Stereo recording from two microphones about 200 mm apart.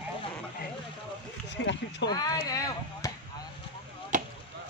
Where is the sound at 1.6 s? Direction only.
65° left (ahead or behind).